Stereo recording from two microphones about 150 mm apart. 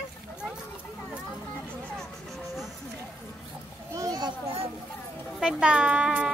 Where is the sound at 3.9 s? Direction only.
25° right (ahead or behind).